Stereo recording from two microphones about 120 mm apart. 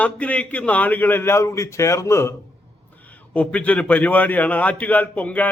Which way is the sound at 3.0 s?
15° left (ahead or behind).